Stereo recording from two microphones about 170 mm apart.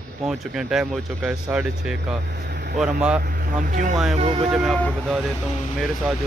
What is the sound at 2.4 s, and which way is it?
Vehicle, 90° right.